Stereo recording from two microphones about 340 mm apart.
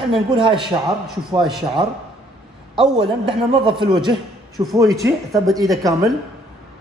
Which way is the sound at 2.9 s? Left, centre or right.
Centre.